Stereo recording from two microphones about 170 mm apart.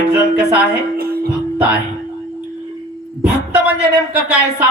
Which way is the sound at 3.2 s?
5° right (ahead or behind).